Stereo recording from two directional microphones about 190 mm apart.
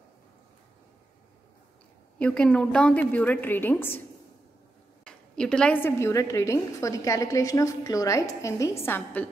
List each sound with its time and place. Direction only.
2.1 s a woman's voice: 5° left (ahead or behind)
5.0 s a woman's voice: 5° left (ahead or behind)